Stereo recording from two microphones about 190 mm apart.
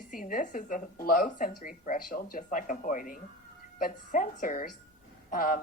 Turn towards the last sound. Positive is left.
turn(degrees=45)  # may be behind; listen again after turning